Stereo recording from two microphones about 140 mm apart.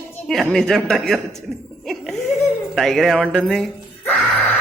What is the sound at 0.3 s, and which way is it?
Music, 5° left (ahead or behind).